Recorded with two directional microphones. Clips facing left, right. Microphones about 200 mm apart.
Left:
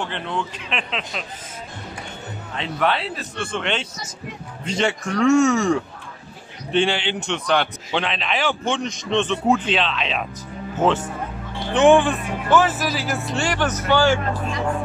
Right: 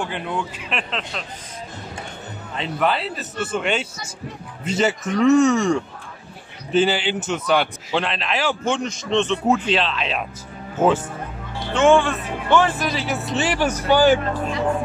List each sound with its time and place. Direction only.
0.0 s a man's voice: 10° right (ahead or behind)
2.5 s a man's voice: centre (ahead or behind)
11.7 s speech: 15° left (ahead or behind)
12.4 s a man's voice: 5° left (ahead or behind); by 14.2 s 15° right (ahead or behind)